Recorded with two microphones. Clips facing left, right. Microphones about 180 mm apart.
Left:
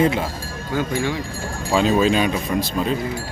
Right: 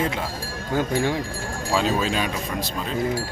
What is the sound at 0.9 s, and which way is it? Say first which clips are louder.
Speech: right 1 dB; 40° right (ahead or behind).